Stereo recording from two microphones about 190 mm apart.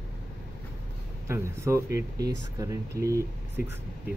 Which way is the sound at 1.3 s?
15° right (ahead or behind).